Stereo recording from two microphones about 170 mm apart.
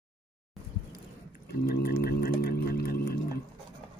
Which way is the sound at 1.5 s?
70° left (ahead or behind).